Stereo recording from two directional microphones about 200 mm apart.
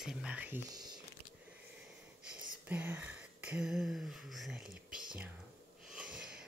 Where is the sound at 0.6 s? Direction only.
20° right (ahead or behind).